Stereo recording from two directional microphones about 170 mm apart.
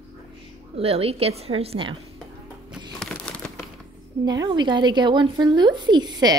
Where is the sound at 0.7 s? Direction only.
35° right (ahead or behind).